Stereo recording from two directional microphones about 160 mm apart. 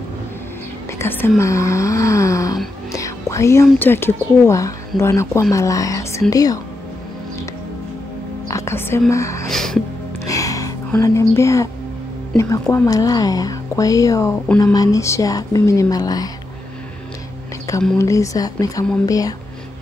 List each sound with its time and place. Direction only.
0.9 s speech: 15° left (ahead or behind)
1.4 s gasp: 20° left (ahead or behind)
2.9 s whispering: 20° left (ahead or behind)
3.8 s speech: 15° left (ahead or behind)
8.5 s music: 20° left (ahead or behind)
9.1 s speech: 20° left (ahead or behind)
9.5 s music: centre (ahead or behind)
10.2 s a sound: 20° left (ahead or behind)
12.6 s speech: 15° left (ahead or behind)
17.9 s speech: 20° left (ahead or behind)